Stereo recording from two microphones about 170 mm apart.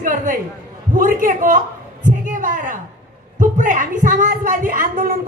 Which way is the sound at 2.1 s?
50° right (ahead or behind).